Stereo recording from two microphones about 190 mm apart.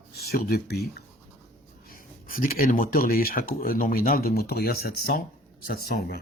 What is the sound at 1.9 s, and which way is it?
Speech, 50° left (ahead or behind).